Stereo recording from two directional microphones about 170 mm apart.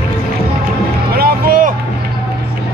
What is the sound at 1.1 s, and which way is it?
Music, 60° right (ahead or behind).